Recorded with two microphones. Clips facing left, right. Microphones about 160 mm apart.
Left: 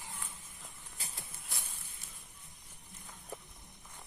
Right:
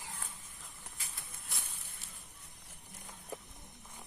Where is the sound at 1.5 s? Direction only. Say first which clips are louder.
Even; centre (ahead or behind).